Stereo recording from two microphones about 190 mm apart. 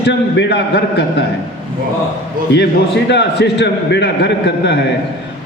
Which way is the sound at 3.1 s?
65° left (ahead or behind).